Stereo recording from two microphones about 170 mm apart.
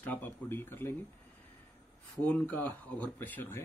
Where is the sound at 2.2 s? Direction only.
10° left (ahead or behind).